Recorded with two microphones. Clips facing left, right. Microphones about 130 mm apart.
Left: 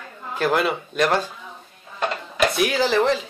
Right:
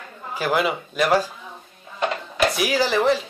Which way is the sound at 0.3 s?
5° right (ahead or behind).